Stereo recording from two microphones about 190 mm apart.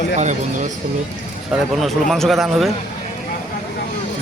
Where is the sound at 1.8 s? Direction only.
Centre (ahead or behind).